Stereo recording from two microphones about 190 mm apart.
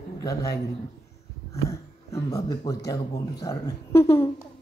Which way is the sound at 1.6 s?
15° left (ahead or behind).